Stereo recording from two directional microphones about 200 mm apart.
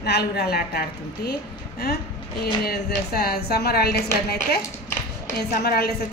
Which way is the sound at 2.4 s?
50° left (ahead or behind).